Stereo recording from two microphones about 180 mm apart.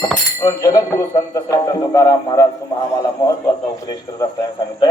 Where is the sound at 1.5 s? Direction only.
20° left (ahead or behind).